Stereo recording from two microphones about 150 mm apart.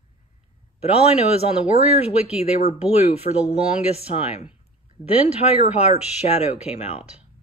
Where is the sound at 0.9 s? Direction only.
40° left (ahead or behind).